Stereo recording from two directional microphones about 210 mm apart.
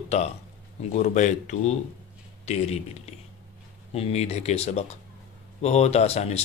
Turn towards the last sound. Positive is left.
turn(degrees=30)  # may be behind; listen again after turning